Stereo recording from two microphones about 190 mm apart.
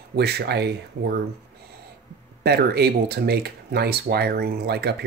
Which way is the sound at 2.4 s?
55° right (ahead or behind).